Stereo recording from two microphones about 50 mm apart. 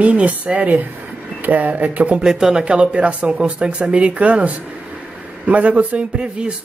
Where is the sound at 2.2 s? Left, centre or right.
Centre; by 6.0 s right.